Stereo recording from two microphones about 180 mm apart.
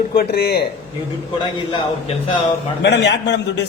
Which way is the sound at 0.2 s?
60° left (ahead or behind).